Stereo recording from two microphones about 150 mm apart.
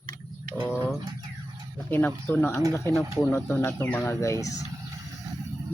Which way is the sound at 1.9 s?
10° left (ahead or behind).